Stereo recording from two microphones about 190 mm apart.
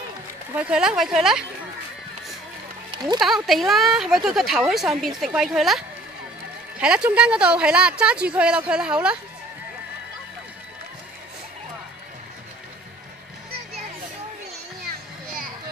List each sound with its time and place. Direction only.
0.6 s speech: 5° right (ahead or behind)
2.9 s music: 25° right (ahead or behind)
3.2 s speech: centre (ahead or behind)
14.9 s children playing: 50° right (ahead or behind)